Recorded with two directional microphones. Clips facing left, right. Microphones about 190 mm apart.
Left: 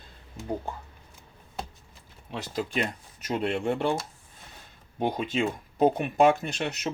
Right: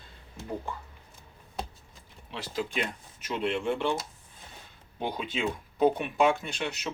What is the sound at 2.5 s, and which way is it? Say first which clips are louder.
Speech: left 2 dB; 40° left (ahead or behind).